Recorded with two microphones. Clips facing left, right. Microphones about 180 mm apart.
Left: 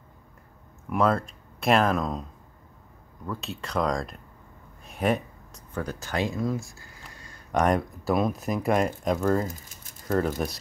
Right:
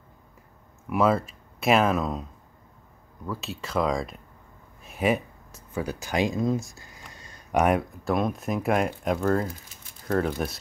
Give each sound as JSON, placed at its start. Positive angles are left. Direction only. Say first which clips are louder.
{"t": 0.8, "sound": "speech", "louder": "right 1 dB", "side_deg": -5}
{"t": 3.3, "sound": "speech", "louder": "right 1 dB", "side_deg": 0}
{"t": 7.2, "sound": "a sound", "louder": "even", "side_deg": -20}
{"t": 7.5, "sound": "speech", "louder": "right 1 dB", "side_deg": -5}